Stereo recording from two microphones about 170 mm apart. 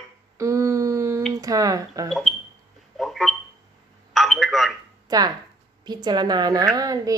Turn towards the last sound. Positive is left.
turn(degrees=-20)  # may be behind; listen again after turning